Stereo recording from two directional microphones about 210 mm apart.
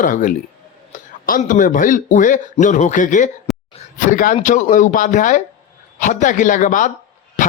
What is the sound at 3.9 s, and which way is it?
A man's voice, 40° left (ahead or behind).